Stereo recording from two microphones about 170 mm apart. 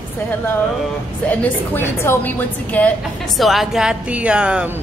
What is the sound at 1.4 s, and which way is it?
A woman's voice, 10° left (ahead or behind).